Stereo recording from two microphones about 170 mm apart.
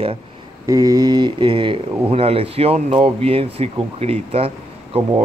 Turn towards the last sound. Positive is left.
turn(degrees=-35)  # may be behind; listen again after turning